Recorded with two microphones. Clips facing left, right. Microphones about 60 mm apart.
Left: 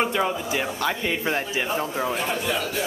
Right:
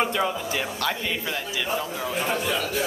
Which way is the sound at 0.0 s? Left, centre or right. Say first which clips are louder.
Left 1 dB; centre.